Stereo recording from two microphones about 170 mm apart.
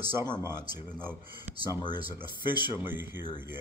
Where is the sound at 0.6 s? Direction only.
25° left (ahead or behind).